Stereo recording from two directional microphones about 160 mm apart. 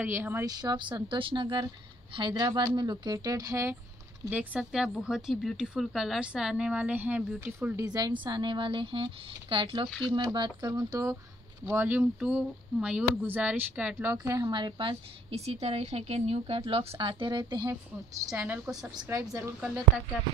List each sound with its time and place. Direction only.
0.0 s speech: 15° right (ahead or behind)
4.3 s speech: 5° right (ahead or behind)
7.8 s speech: 25° right (ahead or behind)
18.3 s a woman's voice: 10° right (ahead or behind)